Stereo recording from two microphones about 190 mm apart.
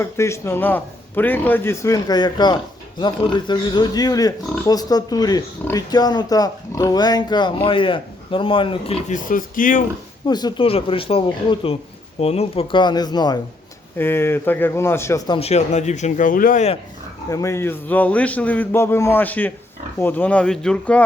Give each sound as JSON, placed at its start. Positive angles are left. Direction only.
{"t": 0.0, "sound": "a man's voice", "side_deg": 15}
{"t": 9.0, "sound": "speech", "side_deg": 45}
{"t": 10.2, "sound": "a man's voice", "side_deg": 20}
{"t": 15.4, "sound": "speech", "side_deg": 35}
{"t": 17.2, "sound": "a man's voice", "side_deg": 15}